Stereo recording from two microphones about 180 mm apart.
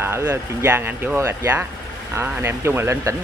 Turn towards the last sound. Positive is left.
turn(degrees=-15)  # may be behind; listen again after turning